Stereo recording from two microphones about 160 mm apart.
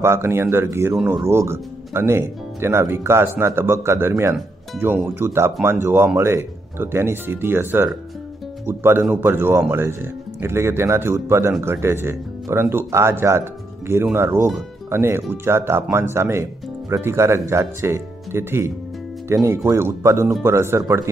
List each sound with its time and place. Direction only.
0.0 s speech: 15° right (ahead or behind)